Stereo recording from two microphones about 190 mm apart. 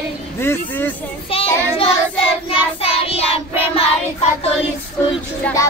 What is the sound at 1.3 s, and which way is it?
Child singing, 30° left (ahead or behind).